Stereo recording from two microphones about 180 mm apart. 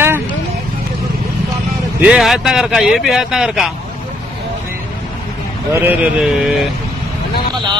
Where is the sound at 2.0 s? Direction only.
5° right (ahead or behind).